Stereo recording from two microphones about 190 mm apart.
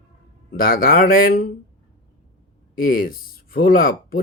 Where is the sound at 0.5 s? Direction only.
50° left (ahead or behind).